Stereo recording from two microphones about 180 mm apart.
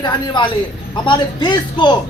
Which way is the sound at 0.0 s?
25° left (ahead or behind).